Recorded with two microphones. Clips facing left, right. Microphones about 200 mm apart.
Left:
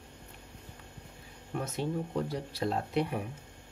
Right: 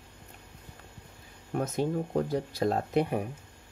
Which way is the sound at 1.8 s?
45° right (ahead or behind).